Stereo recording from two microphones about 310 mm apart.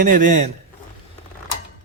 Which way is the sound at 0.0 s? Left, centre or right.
Right.